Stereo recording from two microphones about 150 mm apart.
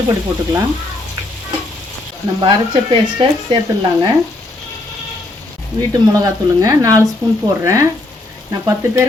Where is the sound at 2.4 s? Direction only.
30° right (ahead or behind).